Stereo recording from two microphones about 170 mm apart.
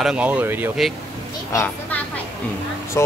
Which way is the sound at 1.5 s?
10° left (ahead or behind).